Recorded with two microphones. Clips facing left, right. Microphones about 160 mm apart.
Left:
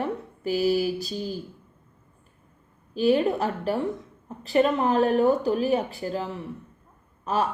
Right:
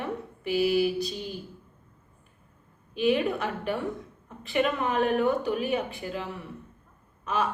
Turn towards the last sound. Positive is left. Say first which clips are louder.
# left 3 dB
turn(degrees=35)  # may be behind; listen again after turning